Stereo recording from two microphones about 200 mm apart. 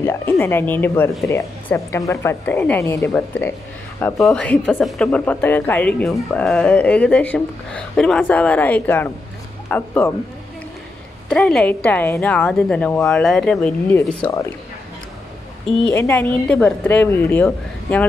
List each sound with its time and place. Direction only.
0.0 s speech: 10° left (ahead or behind)
11.2 s a woman's voice: 5° left (ahead or behind)
15.9 s speech: 10° left (ahead or behind)